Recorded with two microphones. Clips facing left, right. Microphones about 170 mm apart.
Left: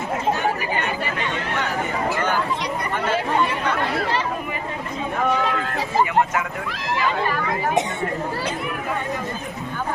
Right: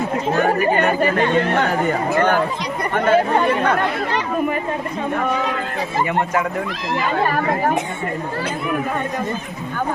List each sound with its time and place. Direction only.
0.3 s speech: 55° right (ahead or behind)